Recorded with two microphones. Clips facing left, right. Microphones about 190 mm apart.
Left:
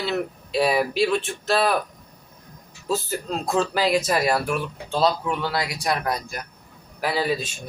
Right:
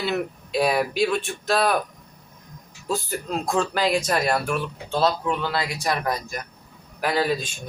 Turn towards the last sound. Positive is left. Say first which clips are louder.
# right 1 dB
turn(degrees=5)  # may be behind; listen again after turning